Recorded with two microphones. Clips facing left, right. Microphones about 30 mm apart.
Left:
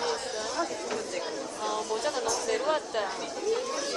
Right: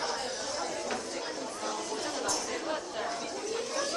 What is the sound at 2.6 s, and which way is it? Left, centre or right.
Chatter, left.